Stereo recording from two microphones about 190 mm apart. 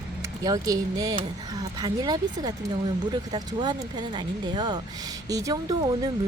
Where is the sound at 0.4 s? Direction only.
20° right (ahead or behind).